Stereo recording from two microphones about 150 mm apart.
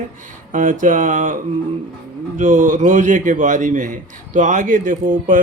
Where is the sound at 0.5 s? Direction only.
60° right (ahead or behind).